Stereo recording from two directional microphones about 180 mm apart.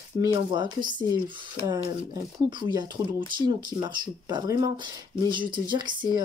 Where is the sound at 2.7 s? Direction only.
25° right (ahead or behind).